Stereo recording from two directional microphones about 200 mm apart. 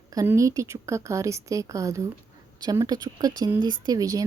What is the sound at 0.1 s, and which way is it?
Speech, 15° right (ahead or behind).